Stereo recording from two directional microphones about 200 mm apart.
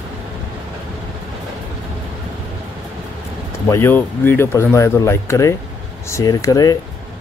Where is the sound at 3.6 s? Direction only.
10° left (ahead or behind).